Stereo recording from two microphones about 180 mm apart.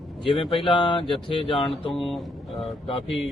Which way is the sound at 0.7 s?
25° left (ahead or behind).